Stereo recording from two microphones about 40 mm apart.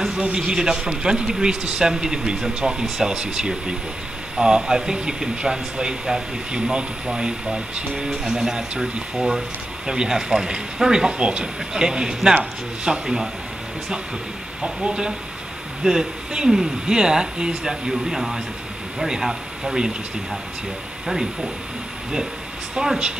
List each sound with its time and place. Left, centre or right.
0.2 s speech: right
14.6 s speech: right
21.1 s speech: centre
22.8 s speech: right